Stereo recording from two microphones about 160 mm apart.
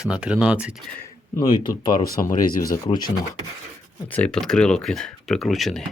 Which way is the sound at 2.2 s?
60° left (ahead or behind).